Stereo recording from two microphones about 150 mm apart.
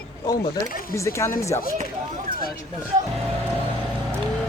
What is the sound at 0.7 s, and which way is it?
Speech, 75° left (ahead or behind).